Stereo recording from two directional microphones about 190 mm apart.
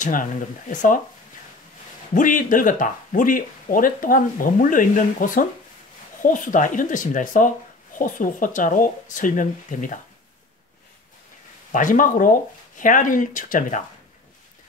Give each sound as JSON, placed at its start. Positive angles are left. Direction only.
{"t": 0.0, "sound": "speech", "side_deg": 45}
{"t": 2.1, "sound": "speech", "side_deg": 45}
{"t": 11.7, "sound": "speech", "side_deg": 45}